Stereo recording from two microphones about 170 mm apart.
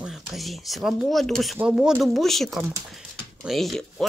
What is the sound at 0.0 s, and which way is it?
Speech, centre (ahead or behind).